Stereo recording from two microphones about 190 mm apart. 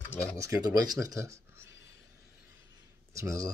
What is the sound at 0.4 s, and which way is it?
A man's voice, 20° right (ahead or behind).